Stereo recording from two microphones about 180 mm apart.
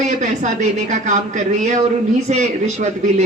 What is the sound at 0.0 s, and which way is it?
A woman's voice, 40° right (ahead or behind).